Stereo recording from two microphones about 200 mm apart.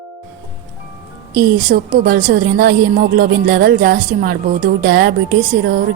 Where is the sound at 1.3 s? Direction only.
45° right (ahead or behind).